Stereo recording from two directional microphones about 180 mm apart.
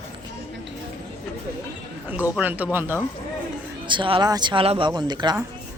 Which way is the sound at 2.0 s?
10° right (ahead or behind).